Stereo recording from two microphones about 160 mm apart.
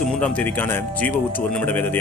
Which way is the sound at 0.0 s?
5° left (ahead or behind).